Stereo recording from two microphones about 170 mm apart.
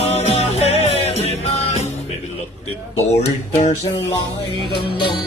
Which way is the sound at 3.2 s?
45° left (ahead or behind).